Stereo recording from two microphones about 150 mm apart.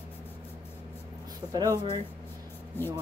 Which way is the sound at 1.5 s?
25° right (ahead or behind).